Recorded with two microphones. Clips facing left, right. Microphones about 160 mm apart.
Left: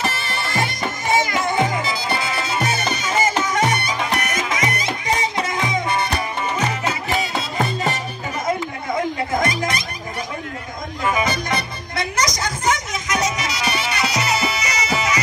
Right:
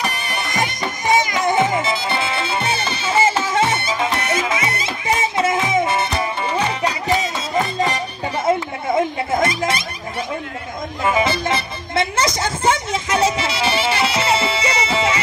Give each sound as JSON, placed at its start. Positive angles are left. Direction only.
{"t": 0.0, "sound": "music", "side_deg": -15}
{"t": 8.5, "sound": "music", "side_deg": -25}
{"t": 11.1, "sound": "music", "side_deg": -25}